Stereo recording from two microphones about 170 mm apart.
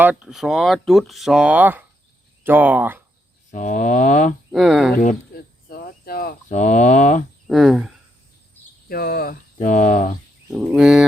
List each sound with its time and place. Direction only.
0.0 s speech: 10° right (ahead or behind)
3.5 s speech: 45° left (ahead or behind)
4.5 s speech: centre (ahead or behind)
5.3 s cricket: 65° left (ahead or behind)
6.5 s speech: 45° left (ahead or behind)
7.4 s speech: centre (ahead or behind)
8.9 s speech: 65° left (ahead or behind); by 10.2 s 45° left (ahead or behind)
10.7 s speech: 5° right (ahead or behind)